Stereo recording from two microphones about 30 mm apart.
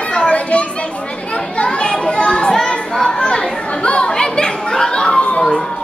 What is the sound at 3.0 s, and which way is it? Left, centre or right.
Chatter, left.